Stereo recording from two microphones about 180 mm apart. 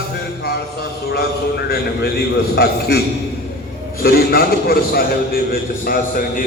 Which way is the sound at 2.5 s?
65° left (ahead or behind).